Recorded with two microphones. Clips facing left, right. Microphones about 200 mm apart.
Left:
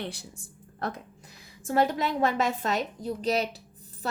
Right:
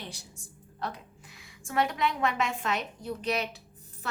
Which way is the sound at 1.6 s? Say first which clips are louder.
Left 3 dB; 35° left (ahead or behind).